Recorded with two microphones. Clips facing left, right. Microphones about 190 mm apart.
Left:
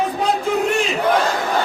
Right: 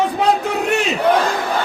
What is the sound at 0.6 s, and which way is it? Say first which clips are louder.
Battle cry: even; 70° right (ahead or behind).